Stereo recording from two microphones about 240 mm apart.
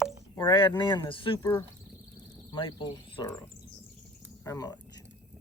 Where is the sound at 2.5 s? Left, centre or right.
Centre.